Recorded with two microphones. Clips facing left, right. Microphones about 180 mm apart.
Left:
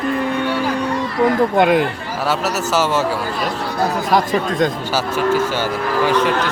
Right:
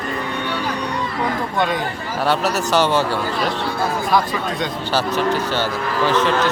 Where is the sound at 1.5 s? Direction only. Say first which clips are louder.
Left 6 dB; 60° left (ahead or behind).